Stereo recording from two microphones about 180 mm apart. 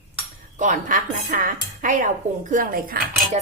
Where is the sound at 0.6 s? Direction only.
45° right (ahead or behind).